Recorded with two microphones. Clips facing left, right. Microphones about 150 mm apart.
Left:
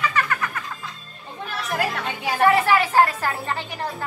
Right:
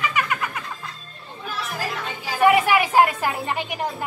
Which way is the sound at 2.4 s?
15° right (ahead or behind).